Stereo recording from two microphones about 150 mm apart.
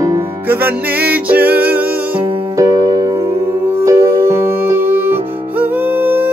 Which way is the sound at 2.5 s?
20° right (ahead or behind).